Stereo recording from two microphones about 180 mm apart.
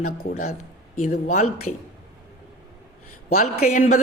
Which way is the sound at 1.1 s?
40° left (ahead or behind).